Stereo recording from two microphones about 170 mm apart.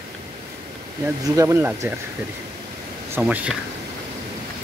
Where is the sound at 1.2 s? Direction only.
15° right (ahead or behind).